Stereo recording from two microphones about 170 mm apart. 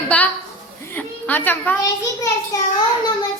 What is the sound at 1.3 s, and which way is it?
Speech, 10° left (ahead or behind).